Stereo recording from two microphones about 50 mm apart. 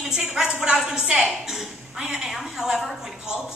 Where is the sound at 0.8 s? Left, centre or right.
Centre.